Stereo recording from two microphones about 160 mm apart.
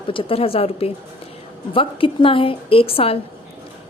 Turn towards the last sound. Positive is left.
turn(degrees=35)  # may be behind; listen again after turning